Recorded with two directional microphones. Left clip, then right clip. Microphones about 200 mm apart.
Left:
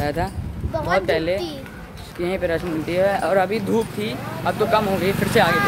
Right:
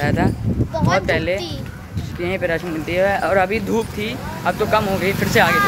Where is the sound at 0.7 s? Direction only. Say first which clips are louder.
Right 1 dB; 25° left (ahead or behind).